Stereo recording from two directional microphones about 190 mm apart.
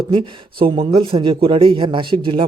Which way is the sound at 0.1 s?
25° right (ahead or behind).